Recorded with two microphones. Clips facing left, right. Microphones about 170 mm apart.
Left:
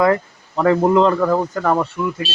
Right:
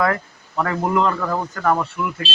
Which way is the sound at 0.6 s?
30° left (ahead or behind).